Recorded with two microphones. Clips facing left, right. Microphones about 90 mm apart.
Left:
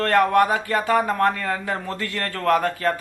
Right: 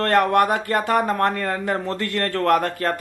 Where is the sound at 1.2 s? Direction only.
45° right (ahead or behind).